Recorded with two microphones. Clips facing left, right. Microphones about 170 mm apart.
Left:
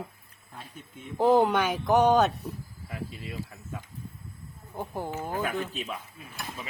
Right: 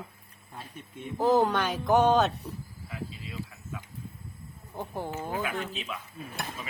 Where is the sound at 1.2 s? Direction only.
25° left (ahead or behind).